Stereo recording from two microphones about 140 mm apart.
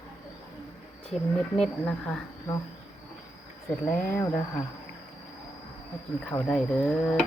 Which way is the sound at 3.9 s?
15° left (ahead or behind).